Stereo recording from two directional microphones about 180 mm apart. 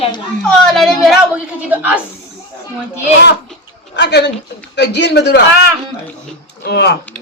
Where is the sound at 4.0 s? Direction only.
70° left (ahead or behind).